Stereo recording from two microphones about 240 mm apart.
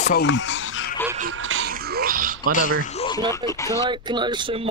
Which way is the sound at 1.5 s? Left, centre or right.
Right.